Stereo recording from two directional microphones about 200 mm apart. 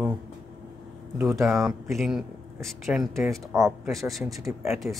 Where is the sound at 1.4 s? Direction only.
Centre (ahead or behind).